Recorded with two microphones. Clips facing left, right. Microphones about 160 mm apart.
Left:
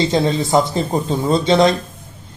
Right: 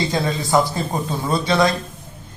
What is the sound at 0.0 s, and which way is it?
A man's voice, 25° left (ahead or behind).